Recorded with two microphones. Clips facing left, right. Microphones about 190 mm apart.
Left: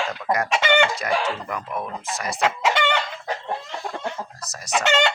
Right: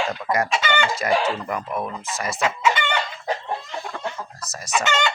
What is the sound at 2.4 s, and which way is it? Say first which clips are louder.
Chicken: even; 70° left (ahead or behind).